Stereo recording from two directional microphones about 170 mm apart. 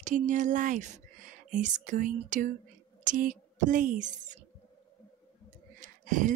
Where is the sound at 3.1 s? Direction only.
50° right (ahead or behind).